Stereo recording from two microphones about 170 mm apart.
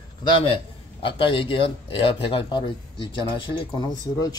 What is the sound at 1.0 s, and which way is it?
Speech, 30° left (ahead or behind).